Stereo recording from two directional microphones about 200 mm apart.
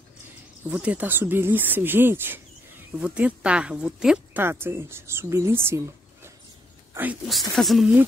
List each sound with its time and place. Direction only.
0.7 s speech: 5° right (ahead or behind)